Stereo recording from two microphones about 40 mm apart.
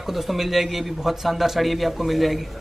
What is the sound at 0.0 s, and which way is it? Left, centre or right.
Speech, centre.